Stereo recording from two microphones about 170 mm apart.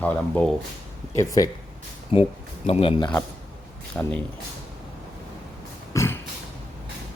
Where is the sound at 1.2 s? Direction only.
20° left (ahead or behind).